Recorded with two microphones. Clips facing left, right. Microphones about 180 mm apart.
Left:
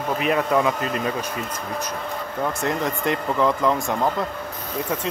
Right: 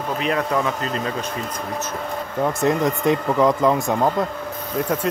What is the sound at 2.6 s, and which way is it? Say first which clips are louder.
Speech: right 7 dB; 15° right (ahead or behind).